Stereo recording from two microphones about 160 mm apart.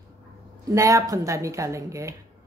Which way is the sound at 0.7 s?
20° right (ahead or behind).